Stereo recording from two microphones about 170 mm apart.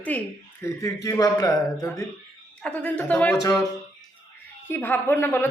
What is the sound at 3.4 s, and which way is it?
Speech, 20° left (ahead or behind).